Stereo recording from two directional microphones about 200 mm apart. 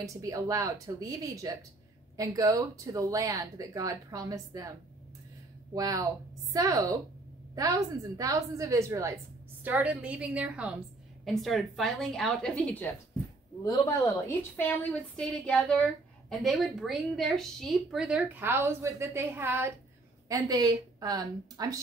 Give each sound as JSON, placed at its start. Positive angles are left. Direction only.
{"t": 0.0, "sound": "speech", "side_deg": -15}
{"t": 5.8, "sound": "a woman's voice", "side_deg": -15}